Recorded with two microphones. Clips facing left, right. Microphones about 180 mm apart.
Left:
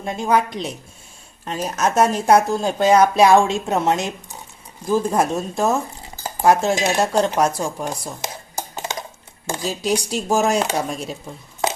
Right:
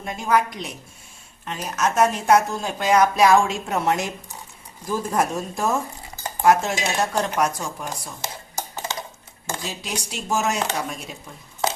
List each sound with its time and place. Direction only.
0.0 s speech: 25° left (ahead or behind)
8.2 s a sound: 15° left (ahead or behind)
9.6 s speech: 35° left (ahead or behind)